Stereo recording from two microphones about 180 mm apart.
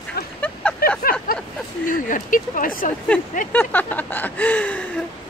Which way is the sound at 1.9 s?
45° left (ahead or behind).